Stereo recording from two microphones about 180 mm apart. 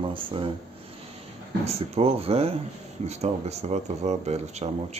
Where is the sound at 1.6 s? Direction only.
35° right (ahead or behind).